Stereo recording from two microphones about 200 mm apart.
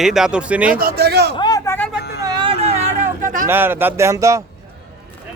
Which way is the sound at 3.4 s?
10° right (ahead or behind).